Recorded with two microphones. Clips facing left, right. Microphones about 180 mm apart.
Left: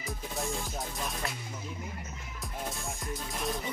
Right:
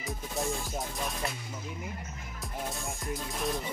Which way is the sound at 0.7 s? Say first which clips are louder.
Right 2 dB; centre (ahead or behind).